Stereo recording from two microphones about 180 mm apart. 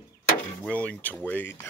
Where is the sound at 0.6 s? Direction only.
5° left (ahead or behind).